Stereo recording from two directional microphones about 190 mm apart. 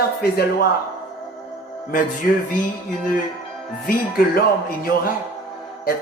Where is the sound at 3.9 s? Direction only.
50° left (ahead or behind).